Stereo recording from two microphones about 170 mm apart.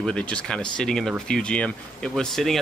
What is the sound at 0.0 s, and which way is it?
Speech, 5° left (ahead or behind).